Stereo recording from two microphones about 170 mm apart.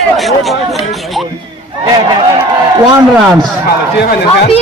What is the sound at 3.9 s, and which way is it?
Speech, 70° left (ahead or behind).